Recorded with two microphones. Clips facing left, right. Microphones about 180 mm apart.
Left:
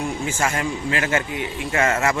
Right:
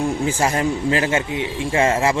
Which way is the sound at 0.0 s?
35° right (ahead or behind).